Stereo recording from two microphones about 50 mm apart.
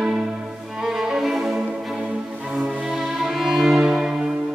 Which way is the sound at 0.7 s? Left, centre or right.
Centre.